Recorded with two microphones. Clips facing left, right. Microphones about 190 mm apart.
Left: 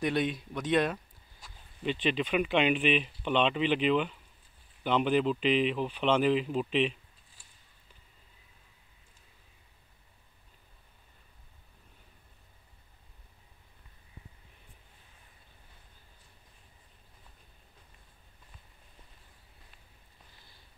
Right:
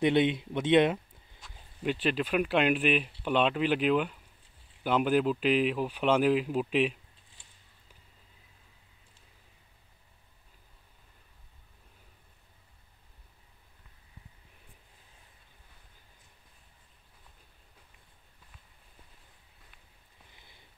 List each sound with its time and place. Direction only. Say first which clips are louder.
0.0 s speech: right 5 dB; 25° right (ahead or behind)
1.4 s speech: right 2 dB; 5° right (ahead or behind)